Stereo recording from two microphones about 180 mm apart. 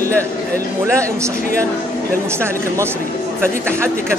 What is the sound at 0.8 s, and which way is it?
Speech, 15° right (ahead or behind).